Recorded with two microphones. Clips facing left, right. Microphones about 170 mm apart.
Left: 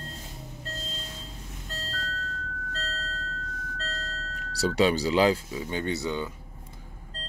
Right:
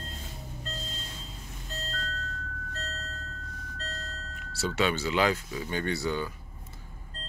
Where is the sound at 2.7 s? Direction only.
90° left.